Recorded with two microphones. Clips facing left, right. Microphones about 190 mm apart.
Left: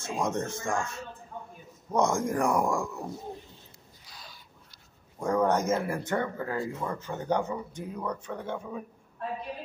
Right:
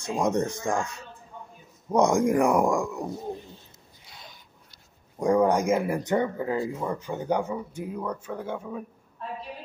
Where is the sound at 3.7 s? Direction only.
25° right (ahead or behind).